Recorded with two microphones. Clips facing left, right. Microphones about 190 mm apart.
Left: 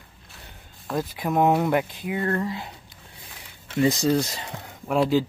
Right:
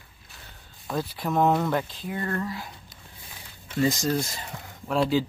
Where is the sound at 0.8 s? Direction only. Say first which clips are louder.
Left 2 dB; 5° left (ahead or behind).